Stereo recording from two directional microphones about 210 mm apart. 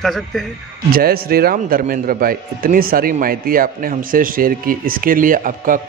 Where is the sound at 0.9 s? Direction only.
45° right (ahead or behind).